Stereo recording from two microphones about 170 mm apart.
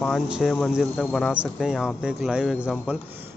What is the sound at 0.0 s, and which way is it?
Speech, centre (ahead or behind).